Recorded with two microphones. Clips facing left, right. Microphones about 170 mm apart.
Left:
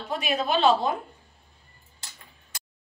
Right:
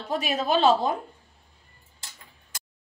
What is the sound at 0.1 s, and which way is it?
Speech, 40° right (ahead or behind).